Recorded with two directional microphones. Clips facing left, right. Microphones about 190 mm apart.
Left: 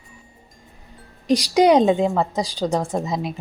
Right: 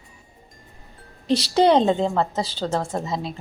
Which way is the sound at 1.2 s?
10° left (ahead or behind).